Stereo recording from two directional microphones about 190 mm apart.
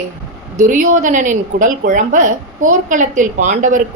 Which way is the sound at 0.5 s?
40° right (ahead or behind).